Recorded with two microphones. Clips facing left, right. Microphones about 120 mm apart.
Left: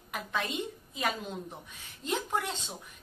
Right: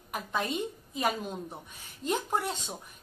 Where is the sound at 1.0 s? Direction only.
10° right (ahead or behind).